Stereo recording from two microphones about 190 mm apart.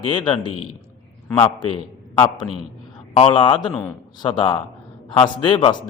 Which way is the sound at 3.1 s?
25° left (ahead or behind).